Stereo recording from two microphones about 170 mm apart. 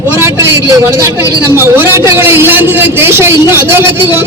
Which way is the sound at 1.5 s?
15° right (ahead or behind).